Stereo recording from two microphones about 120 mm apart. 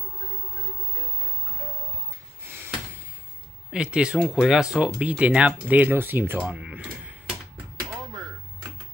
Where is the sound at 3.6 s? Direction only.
10° right (ahead or behind).